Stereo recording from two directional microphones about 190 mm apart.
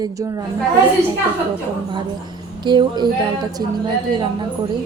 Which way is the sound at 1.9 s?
25° right (ahead or behind).